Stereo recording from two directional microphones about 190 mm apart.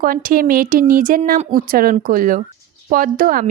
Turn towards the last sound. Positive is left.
turn(degrees=-50)  # may be behind; listen again after turning